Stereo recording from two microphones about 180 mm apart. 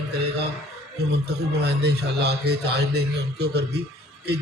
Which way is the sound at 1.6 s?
70° right (ahead or behind).